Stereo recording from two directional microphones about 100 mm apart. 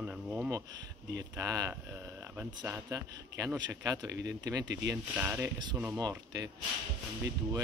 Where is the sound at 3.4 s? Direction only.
40° right (ahead or behind).